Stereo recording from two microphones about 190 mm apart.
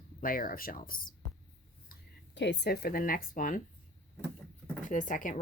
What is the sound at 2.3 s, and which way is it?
A woman's voice, 65° left (ahead or behind).